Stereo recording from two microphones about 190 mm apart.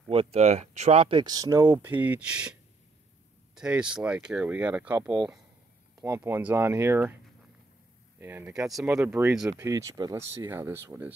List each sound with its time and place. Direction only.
0.1 s speech: 30° right (ahead or behind); by 2.5 s 5° right (ahead or behind)
3.5 s speech: 5° right (ahead or behind)
8.2 s speech: 10° right (ahead or behind)